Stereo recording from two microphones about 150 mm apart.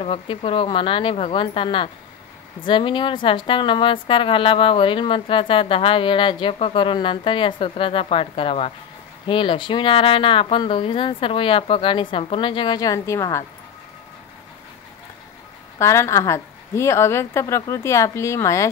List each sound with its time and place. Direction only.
0.0 s a woman's voice: 40° left (ahead or behind); by 13.5 s 20° left (ahead or behind)
15.8 s a woman's voice: 20° left (ahead or behind)